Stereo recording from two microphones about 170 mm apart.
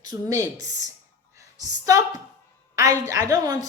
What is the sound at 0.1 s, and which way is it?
Speech, 20° right (ahead or behind).